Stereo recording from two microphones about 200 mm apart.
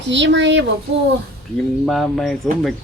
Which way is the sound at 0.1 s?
65° right (ahead or behind).